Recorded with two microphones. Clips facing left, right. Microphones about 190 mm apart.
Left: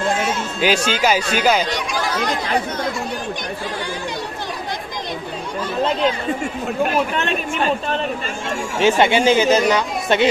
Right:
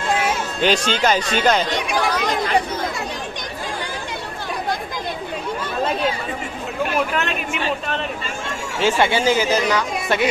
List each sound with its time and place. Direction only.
0.6 s speech: 5° left (ahead or behind)
8.7 s speech: 20° left (ahead or behind)